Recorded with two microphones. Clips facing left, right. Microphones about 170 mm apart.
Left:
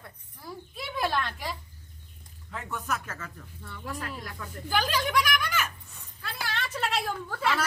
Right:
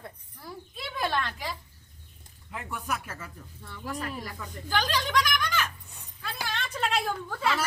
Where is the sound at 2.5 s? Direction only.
10° right (ahead or behind); by 5.7 s 10° left (ahead or behind).